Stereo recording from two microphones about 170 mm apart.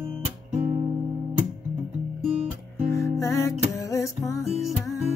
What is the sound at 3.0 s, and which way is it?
Music, 15° left (ahead or behind).